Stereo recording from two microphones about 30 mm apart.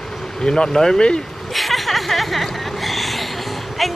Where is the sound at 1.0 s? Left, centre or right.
Left.